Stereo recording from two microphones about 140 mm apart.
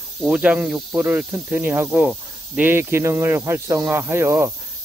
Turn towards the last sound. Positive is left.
turn(degrees=-20)  # may be behind; listen again after turning